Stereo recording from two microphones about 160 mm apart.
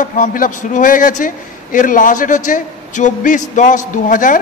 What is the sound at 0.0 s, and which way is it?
A man's voice, 60° left (ahead or behind).